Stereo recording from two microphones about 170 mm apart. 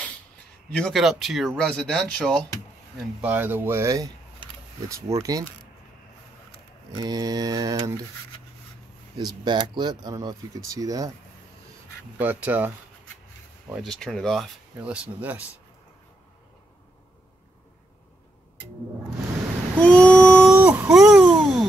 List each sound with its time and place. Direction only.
0.7 s speech: 5° left (ahead or behind)
3.2 s speech: 10° right (ahead or behind)
7.0 s speech: 25° right (ahead or behind)
9.1 s speech: 25° right (ahead or behind)
12.2 s speech: 10° right (ahead or behind)
13.7 s speech: centre (ahead or behind)
19.8 s a sound: 10° left (ahead or behind)
20.4 s a sound: 10° right (ahead or behind)